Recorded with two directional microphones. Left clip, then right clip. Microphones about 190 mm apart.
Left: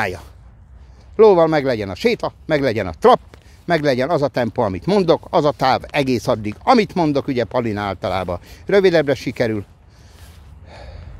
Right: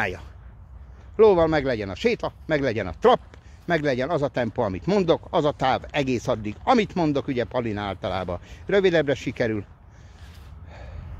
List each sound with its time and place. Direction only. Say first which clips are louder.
1.1 s speech: left 6 dB; 40° left (ahead or behind)
10.7 s snort: left 6 dB; 35° left (ahead or behind)